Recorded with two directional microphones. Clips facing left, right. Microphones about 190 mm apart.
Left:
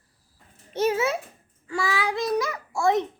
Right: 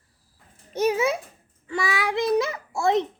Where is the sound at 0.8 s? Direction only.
15° right (ahead or behind).